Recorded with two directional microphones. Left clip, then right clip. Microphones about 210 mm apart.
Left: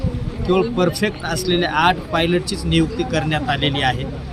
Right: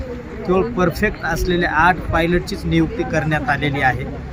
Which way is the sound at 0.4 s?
5° left (ahead or behind).